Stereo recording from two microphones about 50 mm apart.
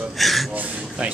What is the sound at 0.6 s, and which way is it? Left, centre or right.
Speech, right.